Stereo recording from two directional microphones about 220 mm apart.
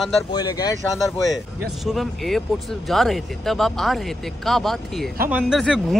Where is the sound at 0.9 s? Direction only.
Centre (ahead or behind).